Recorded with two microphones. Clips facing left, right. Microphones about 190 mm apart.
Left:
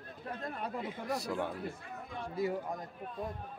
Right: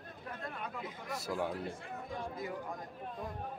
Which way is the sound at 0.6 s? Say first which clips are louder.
Left 5 dB; 35° left (ahead or behind).